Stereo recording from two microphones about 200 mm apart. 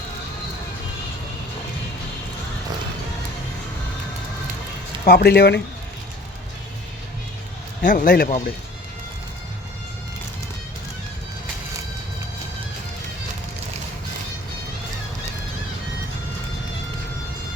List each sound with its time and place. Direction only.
5.0 s speech: 55° left (ahead or behind)
7.8 s speech: 45° left (ahead or behind)